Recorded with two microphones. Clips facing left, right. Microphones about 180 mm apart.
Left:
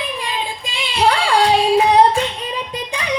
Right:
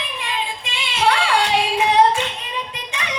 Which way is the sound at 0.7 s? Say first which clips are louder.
Left 3 dB; 35° left (ahead or behind).